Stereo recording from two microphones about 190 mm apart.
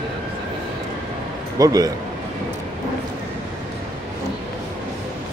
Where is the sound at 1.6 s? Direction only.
20° right (ahead or behind).